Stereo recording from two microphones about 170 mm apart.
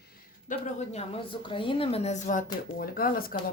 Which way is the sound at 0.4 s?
45° left (ahead or behind).